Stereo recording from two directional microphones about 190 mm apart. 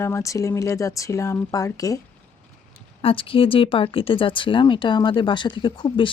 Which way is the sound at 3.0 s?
30° left (ahead or behind).